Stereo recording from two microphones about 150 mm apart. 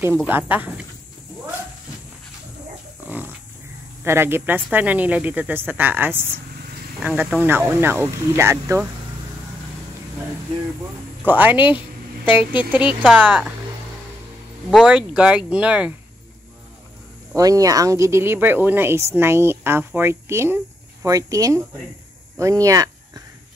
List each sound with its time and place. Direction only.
0.3 s speech: 10° right (ahead or behind)
3.0 s a sound: 10° right (ahead or behind)
4.0 s speech: 15° right (ahead or behind)
11.2 s speech: 10° right (ahead or behind)
14.7 s speech: 5° right (ahead or behind)
17.4 s speech: 25° right (ahead or behind)